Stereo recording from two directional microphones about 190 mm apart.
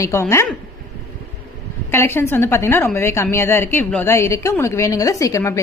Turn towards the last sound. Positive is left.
turn(degrees=15)  # may be behind; listen again after turning